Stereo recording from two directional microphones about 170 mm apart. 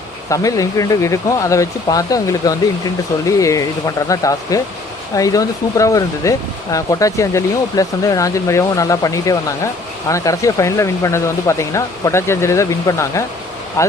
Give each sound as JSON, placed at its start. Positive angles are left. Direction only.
{"t": 0.3, "sound": "speech", "side_deg": 20}